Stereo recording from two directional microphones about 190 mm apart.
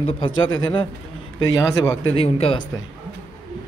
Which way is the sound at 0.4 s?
20° left (ahead or behind).